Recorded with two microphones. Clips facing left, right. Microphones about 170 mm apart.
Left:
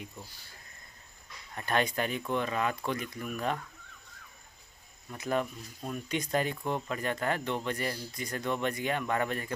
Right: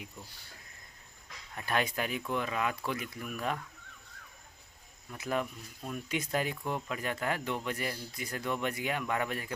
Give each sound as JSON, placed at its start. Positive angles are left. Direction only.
{"t": 1.5, "sound": "speech", "side_deg": -5}
{"t": 5.1, "sound": "speech", "side_deg": -5}